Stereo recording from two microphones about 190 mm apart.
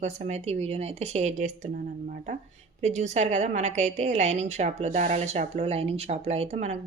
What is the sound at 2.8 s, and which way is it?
A woman's voice, 35° right (ahead or behind).